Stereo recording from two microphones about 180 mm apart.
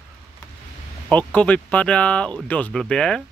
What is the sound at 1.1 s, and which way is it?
Speech, 10° left (ahead or behind).